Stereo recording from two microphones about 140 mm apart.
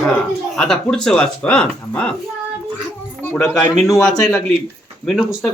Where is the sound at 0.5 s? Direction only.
5° left (ahead or behind).